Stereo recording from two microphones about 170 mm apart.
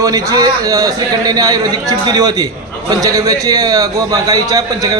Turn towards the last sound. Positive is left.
turn(degrees=-20)  # may be behind; listen again after turning